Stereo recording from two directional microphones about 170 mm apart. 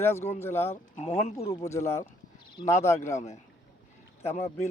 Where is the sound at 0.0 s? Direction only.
15° left (ahead or behind).